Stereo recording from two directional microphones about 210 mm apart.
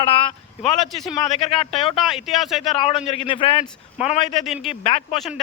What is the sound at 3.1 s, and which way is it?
Speech, 25° left (ahead or behind).